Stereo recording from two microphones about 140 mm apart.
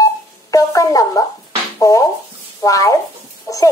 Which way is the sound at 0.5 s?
25° left (ahead or behind).